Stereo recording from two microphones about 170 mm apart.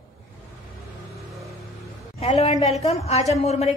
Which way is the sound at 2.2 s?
40° left (ahead or behind).